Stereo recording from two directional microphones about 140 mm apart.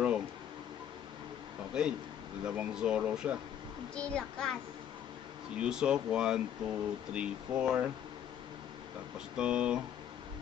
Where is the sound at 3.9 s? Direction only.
5° left (ahead or behind).